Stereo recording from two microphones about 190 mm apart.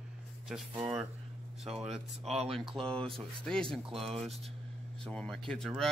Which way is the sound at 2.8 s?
5° left (ahead or behind).